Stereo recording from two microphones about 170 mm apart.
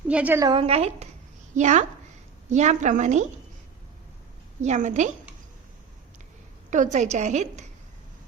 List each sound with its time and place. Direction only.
0.1 s a woman's voice: 10° right (ahead or behind)
0.4 s a woman's voice: 30° right (ahead or behind)
4.6 s a woman's voice: 45° right (ahead or behind)
6.7 s a woman's voice: 45° right (ahead or behind)